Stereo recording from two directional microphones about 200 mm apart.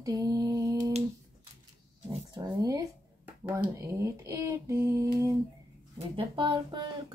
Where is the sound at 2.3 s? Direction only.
20° right (ahead or behind).